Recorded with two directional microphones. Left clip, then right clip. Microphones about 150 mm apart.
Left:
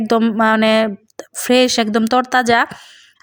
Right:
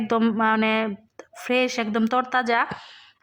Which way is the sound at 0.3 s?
35° left (ahead or behind).